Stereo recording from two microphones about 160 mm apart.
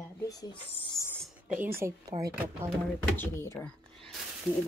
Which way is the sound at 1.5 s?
15° right (ahead or behind).